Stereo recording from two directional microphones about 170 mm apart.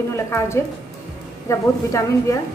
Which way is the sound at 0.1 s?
15° left (ahead or behind).